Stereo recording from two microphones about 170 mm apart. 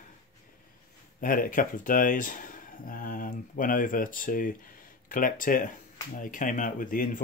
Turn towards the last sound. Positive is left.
turn(degrees=55)  # may be behind; listen again after turning